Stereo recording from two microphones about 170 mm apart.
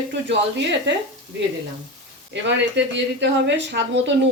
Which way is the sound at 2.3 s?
90° right.